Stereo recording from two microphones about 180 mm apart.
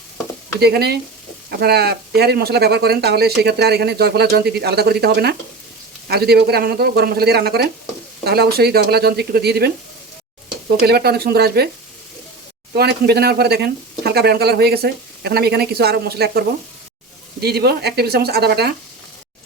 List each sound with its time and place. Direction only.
0.6 s speech: 60° right (ahead or behind)
10.8 s speech: 60° right (ahead or behind)
12.7 s speech: 65° right (ahead or behind)